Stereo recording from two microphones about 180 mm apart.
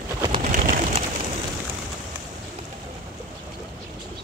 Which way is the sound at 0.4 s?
45° right (ahead or behind).